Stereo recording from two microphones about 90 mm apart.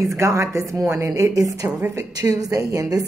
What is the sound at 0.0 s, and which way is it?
A woman's voice, 35° right (ahead or behind).